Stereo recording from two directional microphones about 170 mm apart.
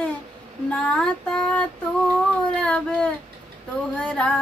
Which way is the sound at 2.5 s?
5° left (ahead or behind).